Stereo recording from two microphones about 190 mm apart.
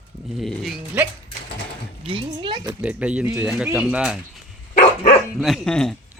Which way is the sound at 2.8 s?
5° right (ahead or behind).